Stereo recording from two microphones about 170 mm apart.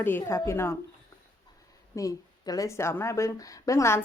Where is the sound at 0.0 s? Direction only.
15° left (ahead or behind).